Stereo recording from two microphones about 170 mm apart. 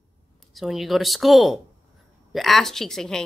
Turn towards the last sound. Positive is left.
turn(degrees=0)  # may be behind; listen again after turning